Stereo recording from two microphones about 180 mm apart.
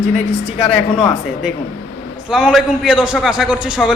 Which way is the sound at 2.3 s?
Centre (ahead or behind).